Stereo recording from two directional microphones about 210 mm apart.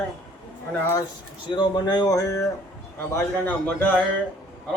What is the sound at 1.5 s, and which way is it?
A man's voice, 20° left (ahead or behind).